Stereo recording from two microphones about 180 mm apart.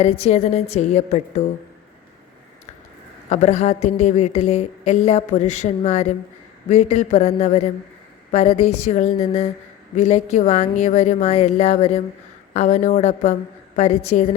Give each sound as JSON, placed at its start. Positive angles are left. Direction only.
{"t": 0.0, "sound": "a woman's voice", "side_deg": 35}
{"t": 3.2, "sound": "a woman's voice", "side_deg": 40}